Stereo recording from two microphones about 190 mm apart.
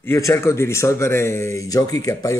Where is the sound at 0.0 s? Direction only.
10° left (ahead or behind).